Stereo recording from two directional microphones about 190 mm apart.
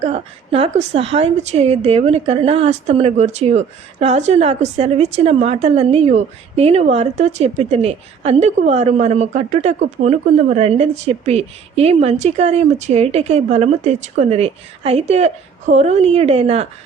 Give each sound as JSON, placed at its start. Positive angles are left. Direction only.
{"t": 0.0, "sound": "a woman's voice", "side_deg": -30}